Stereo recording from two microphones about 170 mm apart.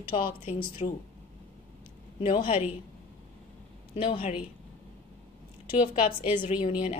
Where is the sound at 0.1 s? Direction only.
30° left (ahead or behind).